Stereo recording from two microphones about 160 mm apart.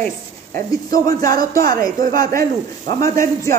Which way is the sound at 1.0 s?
60° right (ahead or behind).